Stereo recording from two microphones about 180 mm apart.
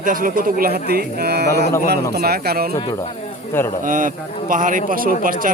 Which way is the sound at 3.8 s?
50° right (ahead or behind).